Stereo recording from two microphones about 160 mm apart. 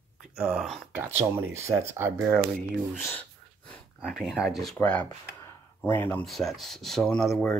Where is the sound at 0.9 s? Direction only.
10° right (ahead or behind).